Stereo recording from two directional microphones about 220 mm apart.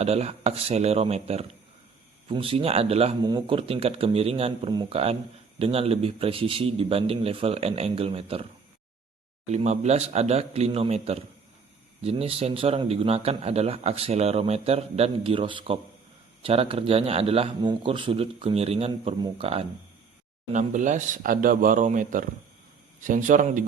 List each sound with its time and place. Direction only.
0.0 s speech: 30° right (ahead or behind)
9.5 s speech: 30° right (ahead or behind)